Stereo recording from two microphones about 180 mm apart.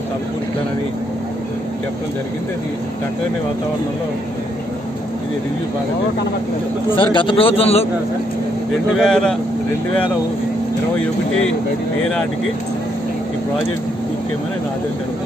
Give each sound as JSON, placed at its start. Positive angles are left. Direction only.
{"t": 7.0, "sound": "a man's voice", "side_deg": 25}
{"t": 8.9, "sound": "a man's voice", "side_deg": 0}